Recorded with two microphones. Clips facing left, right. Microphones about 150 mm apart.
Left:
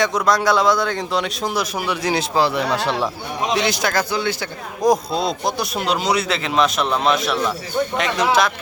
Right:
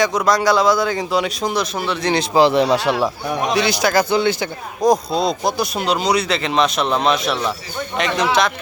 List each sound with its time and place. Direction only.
0.0 s speech: centre (ahead or behind)
2.5 s speech: 30° right (ahead or behind)
3.5 s speech: centre (ahead or behind)
4.1 s speech: 25° right (ahead or behind)
4.8 s speech: centre (ahead or behind)